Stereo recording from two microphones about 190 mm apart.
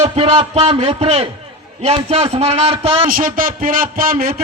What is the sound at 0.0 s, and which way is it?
A man's voice, 30° right (ahead or behind).